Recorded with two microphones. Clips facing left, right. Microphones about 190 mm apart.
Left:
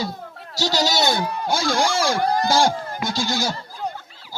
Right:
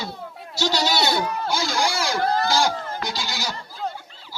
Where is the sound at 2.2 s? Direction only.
15° left (ahead or behind).